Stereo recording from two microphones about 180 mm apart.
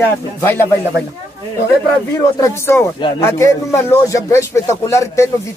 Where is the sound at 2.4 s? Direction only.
15° left (ahead or behind).